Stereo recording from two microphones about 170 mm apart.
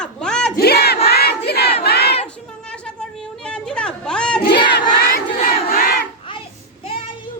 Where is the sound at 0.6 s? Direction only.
70° left (ahead or behind).